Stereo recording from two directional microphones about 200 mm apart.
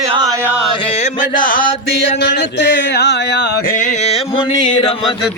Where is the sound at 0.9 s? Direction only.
40° left (ahead or behind).